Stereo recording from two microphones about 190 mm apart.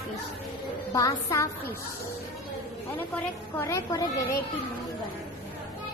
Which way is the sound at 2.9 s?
10° left (ahead or behind).